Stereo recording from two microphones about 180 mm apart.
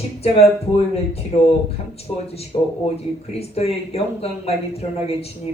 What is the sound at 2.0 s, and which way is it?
Speech, 35° left (ahead or behind).